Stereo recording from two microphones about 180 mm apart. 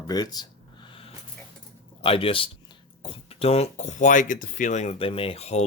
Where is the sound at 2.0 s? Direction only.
30° left (ahead or behind).